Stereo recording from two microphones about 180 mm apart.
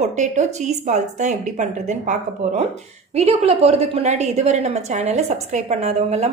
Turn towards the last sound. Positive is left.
turn(degrees=-40)  # may be behind; listen again after turning